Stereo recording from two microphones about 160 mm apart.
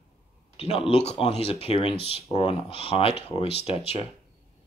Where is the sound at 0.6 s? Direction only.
40° left (ahead or behind).